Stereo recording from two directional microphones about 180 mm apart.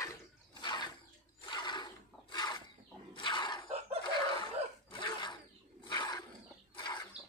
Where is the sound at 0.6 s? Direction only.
25° left (ahead or behind).